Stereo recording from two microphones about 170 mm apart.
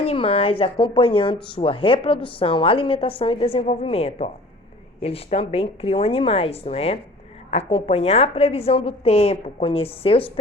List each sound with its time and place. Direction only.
0.0 s speech: 35° left (ahead or behind)